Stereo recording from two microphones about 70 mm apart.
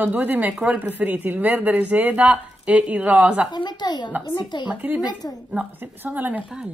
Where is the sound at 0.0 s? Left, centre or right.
Right.